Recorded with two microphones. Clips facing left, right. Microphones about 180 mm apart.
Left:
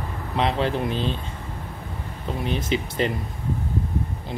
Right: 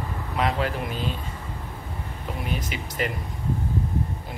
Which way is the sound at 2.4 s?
30° left (ahead or behind).